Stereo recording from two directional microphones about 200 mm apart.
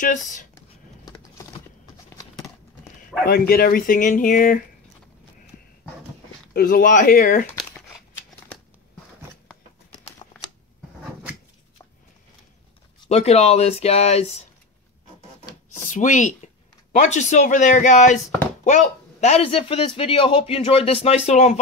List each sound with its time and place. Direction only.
0.0 s speech: 40° left (ahead or behind)
1.1 s a sound: 15° left (ahead or behind)
3.3 s speech: 50° left (ahead or behind)
6.5 s speech: 45° left (ahead or behind)
13.0 s speech: 30° left (ahead or behind)
15.8 s speech: 40° left (ahead or behind)